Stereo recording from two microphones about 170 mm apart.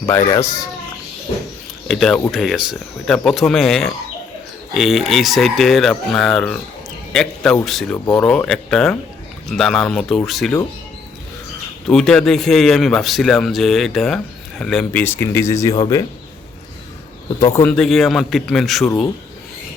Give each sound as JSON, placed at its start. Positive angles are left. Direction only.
{"t": 0.0, "sound": "speech", "side_deg": 15}
{"t": 1.9, "sound": "a man's voice", "side_deg": 5}
{"t": 11.9, "sound": "a man's voice", "side_deg": 5}
{"t": 17.4, "sound": "a man's voice", "side_deg": 15}